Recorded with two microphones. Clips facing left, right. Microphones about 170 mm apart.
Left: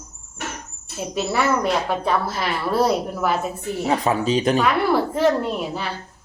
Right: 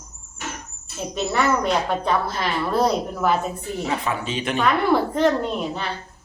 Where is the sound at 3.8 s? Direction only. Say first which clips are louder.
Left 6 dB; 35° left (ahead or behind).